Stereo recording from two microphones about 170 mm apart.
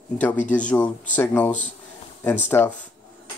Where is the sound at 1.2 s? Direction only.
10° left (ahead or behind).